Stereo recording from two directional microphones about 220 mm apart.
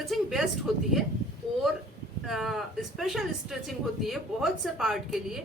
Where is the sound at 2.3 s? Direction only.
Centre (ahead or behind).